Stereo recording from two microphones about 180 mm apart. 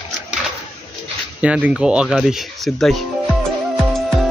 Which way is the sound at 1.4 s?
5° right (ahead or behind).